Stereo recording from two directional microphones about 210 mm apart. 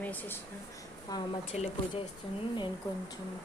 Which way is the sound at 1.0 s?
20° left (ahead or behind).